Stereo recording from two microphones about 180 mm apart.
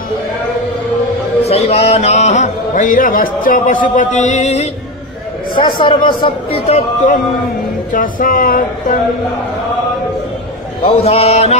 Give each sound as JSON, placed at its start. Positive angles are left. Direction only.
{"t": 1.4, "sound": "music", "side_deg": 35}
{"t": 5.8, "sound": "a man's voice", "side_deg": 25}
{"t": 7.9, "sound": "speech", "side_deg": 50}
{"t": 10.8, "sound": "a man's voice", "side_deg": 35}